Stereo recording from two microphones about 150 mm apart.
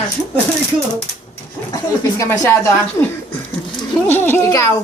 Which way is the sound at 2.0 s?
20° left (ahead or behind).